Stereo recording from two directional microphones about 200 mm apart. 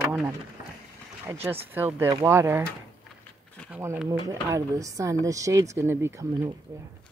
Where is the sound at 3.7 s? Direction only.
10° right (ahead or behind).